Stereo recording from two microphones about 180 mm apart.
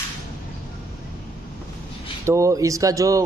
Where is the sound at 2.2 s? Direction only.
15° right (ahead or behind).